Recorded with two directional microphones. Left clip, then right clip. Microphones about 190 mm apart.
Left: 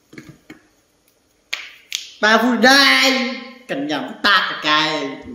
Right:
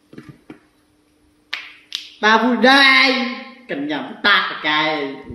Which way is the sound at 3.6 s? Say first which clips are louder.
Left 1 dB; 60° left (ahead or behind).